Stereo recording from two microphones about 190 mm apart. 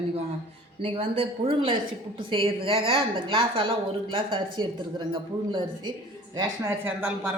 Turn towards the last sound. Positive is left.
turn(degrees=-15)  # may be behind; listen again after turning